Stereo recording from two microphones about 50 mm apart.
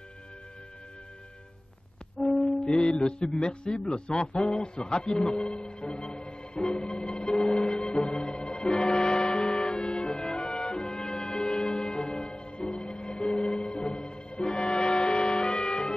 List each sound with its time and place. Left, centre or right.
2.2 s speech: centre
7.5 s music: centre